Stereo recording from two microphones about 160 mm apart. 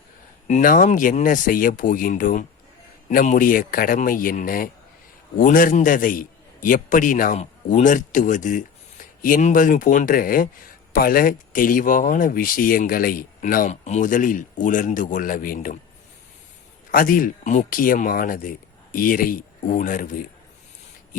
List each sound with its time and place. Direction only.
0.4 s a man's voice: 55° left (ahead or behind)
16.9 s speech: 60° left (ahead or behind)